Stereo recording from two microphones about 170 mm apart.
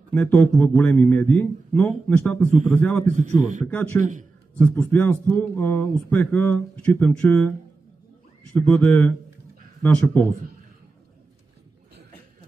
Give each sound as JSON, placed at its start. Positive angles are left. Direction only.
{"t": 0.1, "sound": "a man's voice", "side_deg": 5}
{"t": 3.1, "sound": "a man's voice", "side_deg": -45}
{"t": 3.7, "sound": "a man's voice", "side_deg": 10}
{"t": 4.0, "sound": "a man's voice", "side_deg": -45}
{"t": 4.6, "sound": "a man's voice", "side_deg": 10}
{"t": 8.5, "sound": "a man's voice", "side_deg": 10}